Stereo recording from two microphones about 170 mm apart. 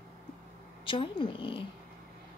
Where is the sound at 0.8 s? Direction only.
30° left (ahead or behind).